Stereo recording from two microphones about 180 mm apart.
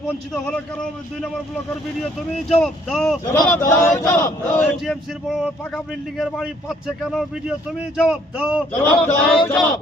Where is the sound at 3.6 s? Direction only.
15° left (ahead or behind).